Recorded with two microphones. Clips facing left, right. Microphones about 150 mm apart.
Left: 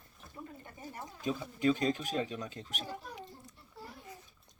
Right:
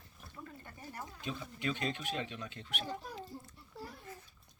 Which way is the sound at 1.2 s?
40° left (ahead or behind).